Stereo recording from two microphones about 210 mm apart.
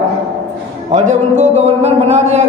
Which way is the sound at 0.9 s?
35° right (ahead or behind).